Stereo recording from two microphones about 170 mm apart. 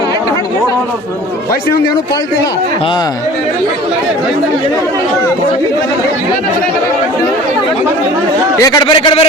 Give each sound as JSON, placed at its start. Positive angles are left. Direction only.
{"t": 8.5, "sound": "a man's voice", "side_deg": 20}